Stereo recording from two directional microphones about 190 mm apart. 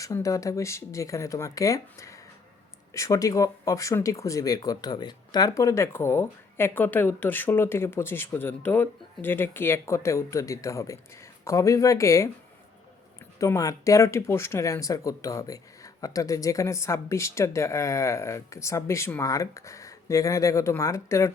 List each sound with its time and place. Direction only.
0.0 s speech: 15° left (ahead or behind)
13.4 s speech: 15° left (ahead or behind)